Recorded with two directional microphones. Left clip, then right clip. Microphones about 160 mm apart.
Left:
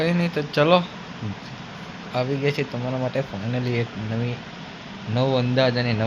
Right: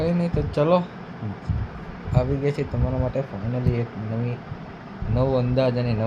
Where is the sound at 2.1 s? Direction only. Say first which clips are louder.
Left 1 dB; 15° right (ahead or behind).